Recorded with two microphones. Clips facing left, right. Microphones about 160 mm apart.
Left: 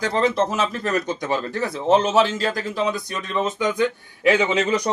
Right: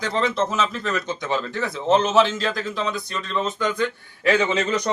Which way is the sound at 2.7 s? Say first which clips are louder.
Left 3 dB; 15° left (ahead or behind).